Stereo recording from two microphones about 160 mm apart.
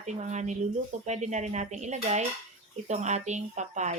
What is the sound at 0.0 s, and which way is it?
Cutlery, 45° right (ahead or behind).